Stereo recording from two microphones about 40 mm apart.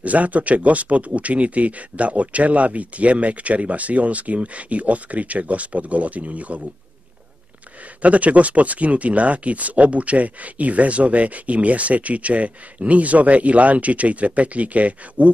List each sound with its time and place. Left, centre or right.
0.0 s speech: right
8.0 s speech: right